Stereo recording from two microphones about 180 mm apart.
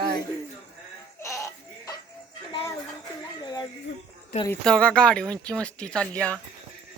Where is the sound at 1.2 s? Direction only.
15° left (ahead or behind).